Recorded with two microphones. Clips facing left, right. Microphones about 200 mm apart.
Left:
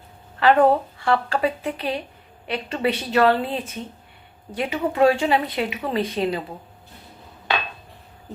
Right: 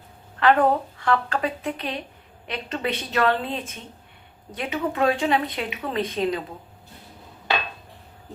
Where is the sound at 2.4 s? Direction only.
5° left (ahead or behind).